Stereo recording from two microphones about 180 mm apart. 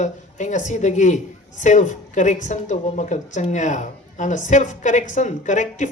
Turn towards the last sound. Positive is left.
turn(degrees=45)  # may be behind; listen again after turning